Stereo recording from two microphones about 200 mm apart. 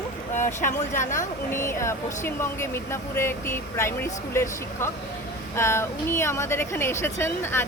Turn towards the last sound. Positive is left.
turn(degrees=10)  # may be behind; listen again after turning